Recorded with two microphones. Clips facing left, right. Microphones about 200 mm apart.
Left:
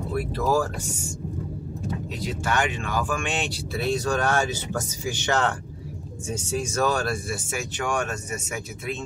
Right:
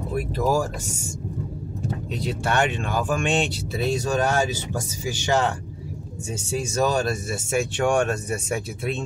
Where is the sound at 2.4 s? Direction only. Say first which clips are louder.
Right 3 dB; 30° right (ahead or behind).